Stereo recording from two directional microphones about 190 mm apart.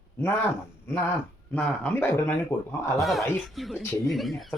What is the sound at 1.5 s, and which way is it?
Speech, 5° left (ahead or behind).